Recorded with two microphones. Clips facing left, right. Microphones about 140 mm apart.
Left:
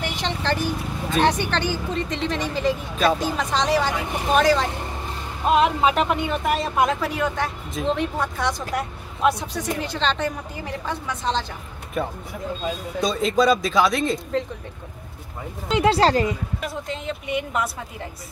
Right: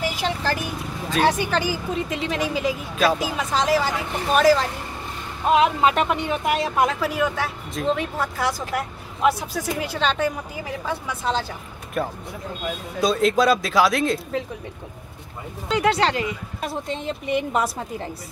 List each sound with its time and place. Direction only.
0.0 s speech: 5° right (ahead or behind)
15.7 s speech: 30° left (ahead or behind)